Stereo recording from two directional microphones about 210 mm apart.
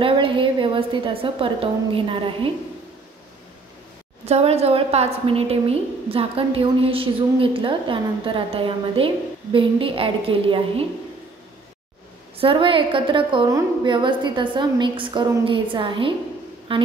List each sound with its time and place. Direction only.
0.0 s a woman's voice: 25° right (ahead or behind)
4.3 s a woman's voice: 30° right (ahead or behind)
12.4 s a woman's voice: 25° right (ahead or behind)